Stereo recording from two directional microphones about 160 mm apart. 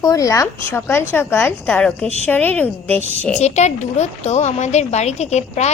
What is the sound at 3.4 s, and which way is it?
A woman's voice, 45° left (ahead or behind).